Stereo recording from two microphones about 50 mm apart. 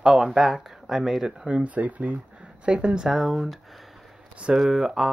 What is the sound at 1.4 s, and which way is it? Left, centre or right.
Speech, right.